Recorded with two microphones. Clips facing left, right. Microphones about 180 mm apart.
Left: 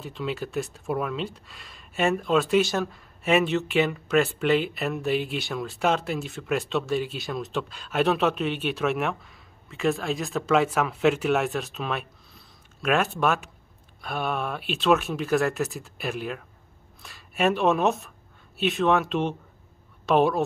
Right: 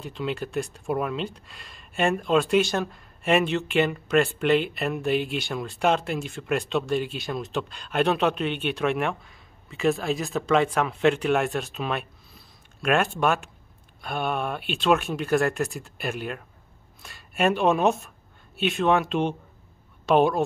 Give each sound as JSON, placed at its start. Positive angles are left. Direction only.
{"t": 0.0, "sound": "speech", "side_deg": 0}